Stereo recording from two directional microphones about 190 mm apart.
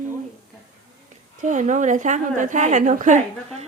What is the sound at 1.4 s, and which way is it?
A woman's voice, 40° right (ahead or behind).